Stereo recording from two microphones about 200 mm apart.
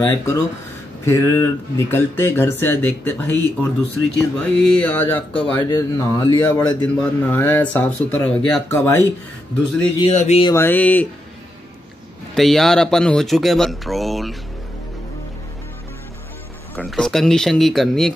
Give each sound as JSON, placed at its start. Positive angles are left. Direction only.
{"t": 0.0, "sound": "a man's voice", "side_deg": 15}
{"t": 9.9, "sound": "speech", "side_deg": 30}
{"t": 10.4, "sound": "a man's voice", "side_deg": 10}
{"t": 12.4, "sound": "speech", "side_deg": 0}
{"t": 16.7, "sound": "speech", "side_deg": 5}